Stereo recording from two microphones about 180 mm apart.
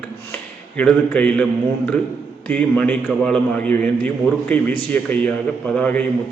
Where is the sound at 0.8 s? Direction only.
10° left (ahead or behind).